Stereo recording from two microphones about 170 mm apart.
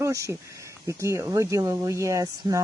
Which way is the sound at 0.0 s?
15° right (ahead or behind).